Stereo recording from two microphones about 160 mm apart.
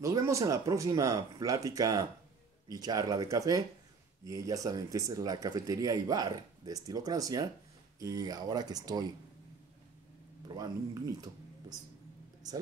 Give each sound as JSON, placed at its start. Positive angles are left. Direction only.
{"t": 0.0, "sound": "speech", "side_deg": -20}
{"t": 10.5, "sound": "speech", "side_deg": -25}